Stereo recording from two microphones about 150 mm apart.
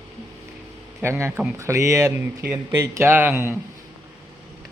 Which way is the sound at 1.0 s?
15° right (ahead or behind).